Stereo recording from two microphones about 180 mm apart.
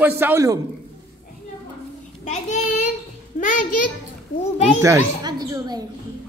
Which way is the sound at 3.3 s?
45° left (ahead or behind).